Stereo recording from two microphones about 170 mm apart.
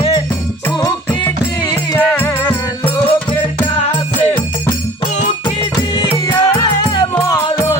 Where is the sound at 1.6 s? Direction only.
20° left (ahead or behind).